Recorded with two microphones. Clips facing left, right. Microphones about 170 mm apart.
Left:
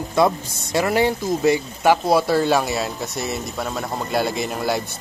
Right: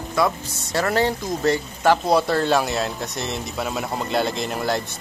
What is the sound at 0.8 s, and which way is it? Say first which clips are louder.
Speech: left 2 dB; 15° left (ahead or behind).